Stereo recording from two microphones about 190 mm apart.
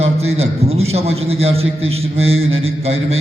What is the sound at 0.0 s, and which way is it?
A man's voice, 35° right (ahead or behind).